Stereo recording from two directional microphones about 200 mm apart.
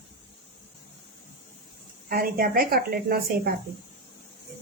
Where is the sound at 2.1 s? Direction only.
45° right (ahead or behind).